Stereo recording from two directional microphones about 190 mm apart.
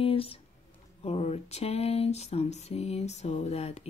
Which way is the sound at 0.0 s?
30° left (ahead or behind).